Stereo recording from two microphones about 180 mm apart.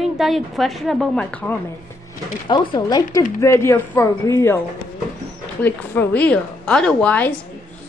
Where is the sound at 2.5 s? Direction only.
25° left (ahead or behind).